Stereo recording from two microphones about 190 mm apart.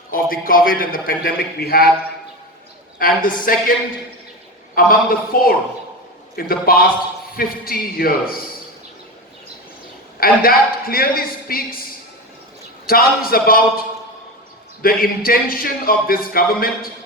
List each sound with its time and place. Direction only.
0.1 s a man's voice: 50° left (ahead or behind)
3.0 s a man's voice: 45° left (ahead or behind)
4.7 s a man's voice: 50° left (ahead or behind)
10.2 s a man's voice: 50° left (ahead or behind)
12.9 s a man's voice: 50° left (ahead or behind)